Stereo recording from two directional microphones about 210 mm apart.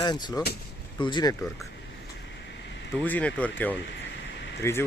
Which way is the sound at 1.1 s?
20° left (ahead or behind).